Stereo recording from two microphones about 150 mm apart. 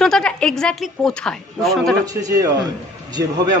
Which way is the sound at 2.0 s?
25° right (ahead or behind).